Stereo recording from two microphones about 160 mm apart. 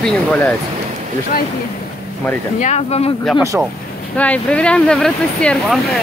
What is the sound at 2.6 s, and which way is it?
Speech, 40° left (ahead or behind).